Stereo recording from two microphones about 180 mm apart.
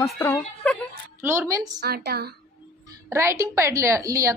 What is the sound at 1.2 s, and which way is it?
Speech, 15° right (ahead or behind).